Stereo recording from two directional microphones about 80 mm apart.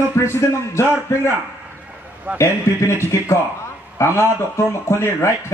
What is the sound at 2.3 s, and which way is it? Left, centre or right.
Speech, centre.